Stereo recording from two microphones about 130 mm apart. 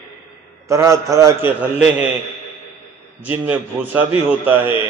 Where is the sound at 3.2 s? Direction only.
10° right (ahead or behind).